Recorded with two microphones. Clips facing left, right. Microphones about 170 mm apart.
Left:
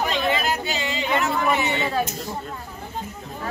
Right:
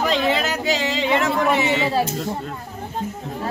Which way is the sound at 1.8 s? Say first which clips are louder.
Right 4 dB; 30° right (ahead or behind).